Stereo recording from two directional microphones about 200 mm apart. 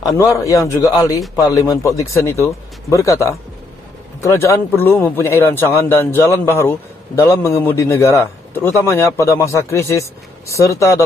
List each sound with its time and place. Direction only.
0.0 s a man's voice: 15° left (ahead or behind)